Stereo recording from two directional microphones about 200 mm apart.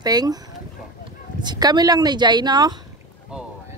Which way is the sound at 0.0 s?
20° right (ahead or behind).